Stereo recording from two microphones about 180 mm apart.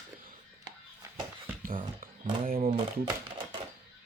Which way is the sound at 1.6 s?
50° right (ahead or behind).